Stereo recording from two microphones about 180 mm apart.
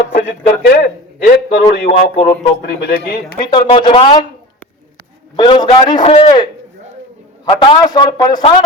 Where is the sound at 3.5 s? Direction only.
30° left (ahead or behind).